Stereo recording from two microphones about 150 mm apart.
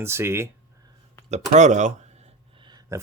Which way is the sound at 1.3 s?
50° right (ahead or behind).